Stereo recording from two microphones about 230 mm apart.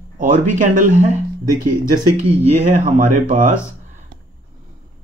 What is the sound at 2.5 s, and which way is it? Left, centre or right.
Speech, right.